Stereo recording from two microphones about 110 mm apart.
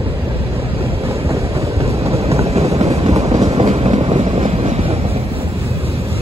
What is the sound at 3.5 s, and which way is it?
Train, 65° right (ahead or behind).